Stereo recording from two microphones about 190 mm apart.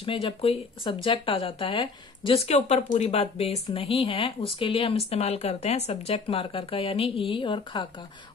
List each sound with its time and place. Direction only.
0.0 s a woman's voice: 30° left (ahead or behind)